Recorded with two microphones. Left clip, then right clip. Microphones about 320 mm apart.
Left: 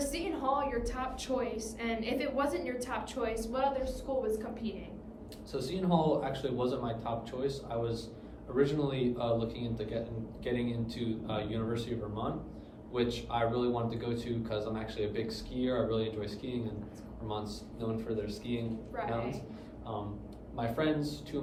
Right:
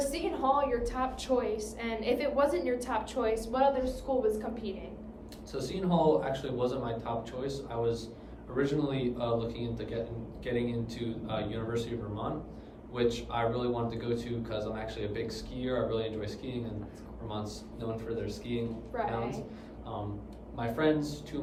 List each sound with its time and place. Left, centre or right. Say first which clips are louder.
0.0 s a woman's voice: right 3 dB; centre
5.5 s a man's voice: right 1 dB; centre
17.7 s a man's voice: even; centre
20.6 s a man's voice: right 3 dB; centre